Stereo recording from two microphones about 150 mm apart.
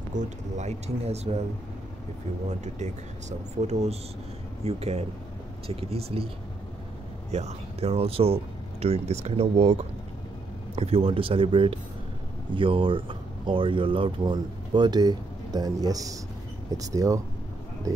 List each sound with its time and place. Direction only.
0.1 s speech: 55° right (ahead or behind)
2.6 s speech: 50° right (ahead or behind)
10.8 s speech: 40° right (ahead or behind); by 17.2 s 20° right (ahead or behind)